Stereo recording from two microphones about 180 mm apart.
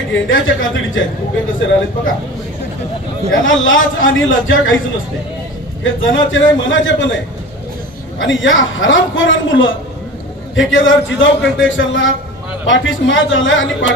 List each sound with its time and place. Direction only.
0.1 s a man's voice: 90° left
3.4 s a man's voice: 90° left
5.9 s a man's voice: 90° left
8.2 s a man's voice: 90° left